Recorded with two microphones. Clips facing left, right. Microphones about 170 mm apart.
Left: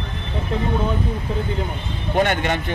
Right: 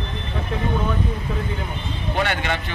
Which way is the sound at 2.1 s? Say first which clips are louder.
Left 5 dB; 45° left (ahead or behind).